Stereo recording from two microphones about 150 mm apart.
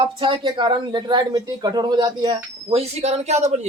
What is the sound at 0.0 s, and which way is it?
A man's voice, 30° right (ahead or behind).